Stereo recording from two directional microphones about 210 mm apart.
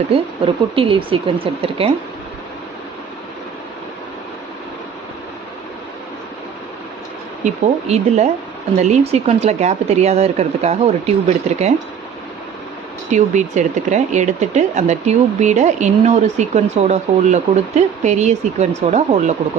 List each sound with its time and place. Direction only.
0.1 s speech: 25° right (ahead or behind)
7.4 s speech: 30° right (ahead or behind)
13.1 s speech: 35° right (ahead or behind)